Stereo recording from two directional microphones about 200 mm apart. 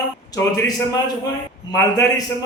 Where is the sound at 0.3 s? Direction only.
15° left (ahead or behind).